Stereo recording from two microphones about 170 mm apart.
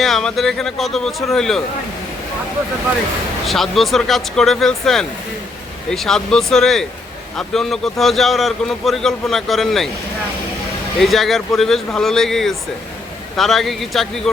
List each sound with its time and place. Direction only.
0.0 s a man's voice: centre (ahead or behind)
3.4 s a man's voice: centre (ahead or behind)
11.0 s a man's voice: centre (ahead or behind)